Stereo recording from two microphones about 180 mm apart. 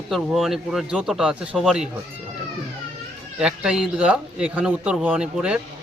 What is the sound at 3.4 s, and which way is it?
Speech, 5° right (ahead or behind).